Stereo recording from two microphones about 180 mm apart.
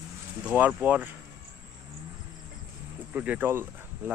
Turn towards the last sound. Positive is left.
turn(degrees=-10)  # may be behind; listen again after turning